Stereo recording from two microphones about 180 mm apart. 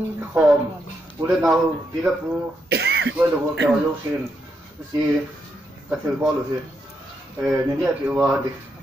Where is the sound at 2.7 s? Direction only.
70° right (ahead or behind).